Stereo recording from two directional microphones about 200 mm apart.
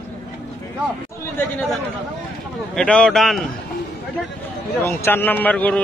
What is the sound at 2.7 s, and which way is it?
Speech, 5° left (ahead or behind).